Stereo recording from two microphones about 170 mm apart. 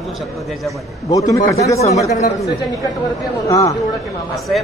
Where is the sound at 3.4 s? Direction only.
20° left (ahead or behind).